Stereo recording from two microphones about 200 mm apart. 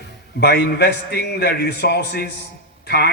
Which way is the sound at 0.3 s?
55° left (ahead or behind).